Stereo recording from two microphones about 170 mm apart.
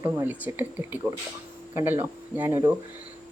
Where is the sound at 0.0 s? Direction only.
15° right (ahead or behind).